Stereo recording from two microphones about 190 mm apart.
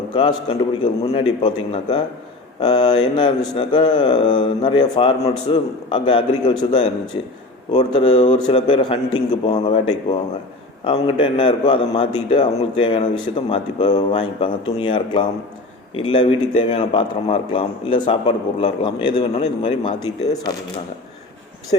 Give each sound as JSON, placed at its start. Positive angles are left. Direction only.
{"t": 0.1, "sound": "speech", "side_deg": 25}
{"t": 20.3, "sound": "speech", "side_deg": 20}
{"t": 21.7, "sound": "speech", "side_deg": 25}